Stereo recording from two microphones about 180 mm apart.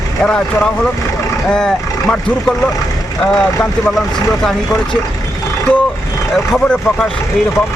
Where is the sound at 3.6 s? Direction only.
5° left (ahead or behind).